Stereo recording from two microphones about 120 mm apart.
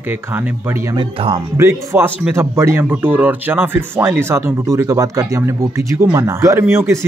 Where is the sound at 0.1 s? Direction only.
15° right (ahead or behind).